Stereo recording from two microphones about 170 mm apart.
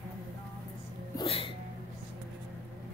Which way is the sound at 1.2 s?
30° left (ahead or behind).